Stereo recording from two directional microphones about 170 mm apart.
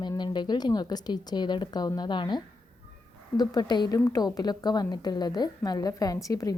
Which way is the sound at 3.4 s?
25° left (ahead or behind).